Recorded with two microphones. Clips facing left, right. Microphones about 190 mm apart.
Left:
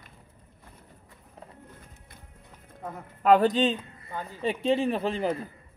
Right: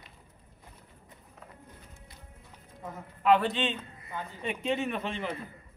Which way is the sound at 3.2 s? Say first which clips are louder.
Left 5 dB; 40° left (ahead or behind).